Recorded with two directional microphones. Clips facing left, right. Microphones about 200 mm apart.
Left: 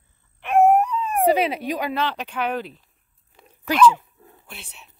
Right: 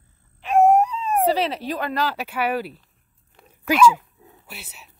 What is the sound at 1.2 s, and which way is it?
Speech, 10° left (ahead or behind).